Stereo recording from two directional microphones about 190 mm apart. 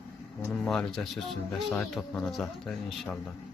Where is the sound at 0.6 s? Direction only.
Centre (ahead or behind).